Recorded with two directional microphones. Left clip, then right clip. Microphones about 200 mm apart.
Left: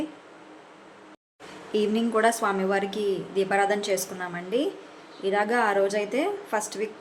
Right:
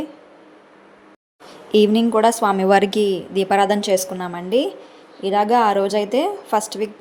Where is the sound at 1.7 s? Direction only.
30° right (ahead or behind).